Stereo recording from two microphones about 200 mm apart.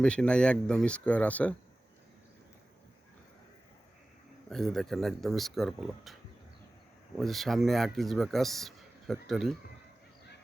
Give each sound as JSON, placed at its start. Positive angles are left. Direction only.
{"t": 0.0, "sound": "speech", "side_deg": 5}
{"t": 4.4, "sound": "speech", "side_deg": 0}
{"t": 7.2, "sound": "speech", "side_deg": 0}